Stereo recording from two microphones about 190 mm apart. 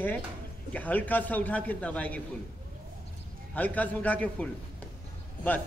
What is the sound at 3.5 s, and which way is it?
Speech, 10° left (ahead or behind).